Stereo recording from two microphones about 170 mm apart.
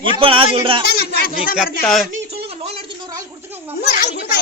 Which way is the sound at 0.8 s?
60° left (ahead or behind).